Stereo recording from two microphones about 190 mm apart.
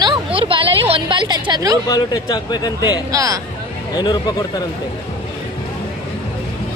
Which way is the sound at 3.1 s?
20° right (ahead or behind).